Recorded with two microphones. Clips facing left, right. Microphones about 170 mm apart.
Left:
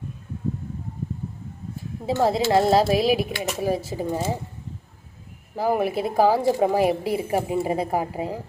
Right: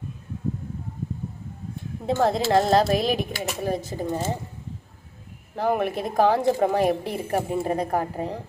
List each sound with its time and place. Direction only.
2.0 s a woman's voice: 5° left (ahead or behind)
5.5 s a woman's voice: 5° left (ahead or behind)